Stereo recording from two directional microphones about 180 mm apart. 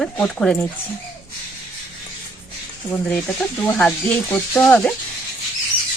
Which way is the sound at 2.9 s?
5° left (ahead or behind).